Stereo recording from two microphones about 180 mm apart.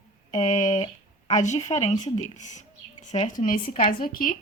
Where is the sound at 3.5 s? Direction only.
50° left (ahead or behind).